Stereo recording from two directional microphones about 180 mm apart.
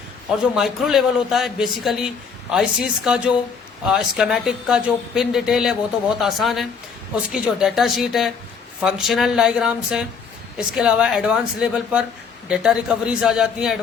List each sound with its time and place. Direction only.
0.5 s a man's voice: centre (ahead or behind)